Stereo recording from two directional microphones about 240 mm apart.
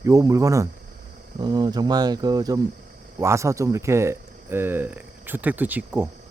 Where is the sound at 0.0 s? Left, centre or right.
Centre.